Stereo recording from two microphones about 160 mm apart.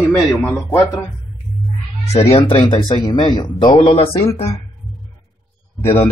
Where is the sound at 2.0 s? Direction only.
40° left (ahead or behind).